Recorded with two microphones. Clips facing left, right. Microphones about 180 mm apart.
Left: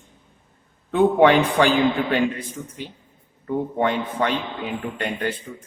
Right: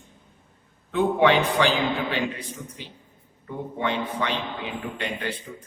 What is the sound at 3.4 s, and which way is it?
A man's voice, 50° left (ahead or behind).